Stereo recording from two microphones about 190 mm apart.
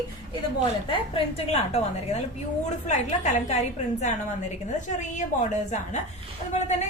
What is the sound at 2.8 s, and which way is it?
A woman's voice, 40° left (ahead or behind).